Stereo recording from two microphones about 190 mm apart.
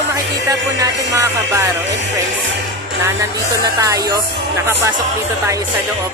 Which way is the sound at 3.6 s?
20° right (ahead or behind).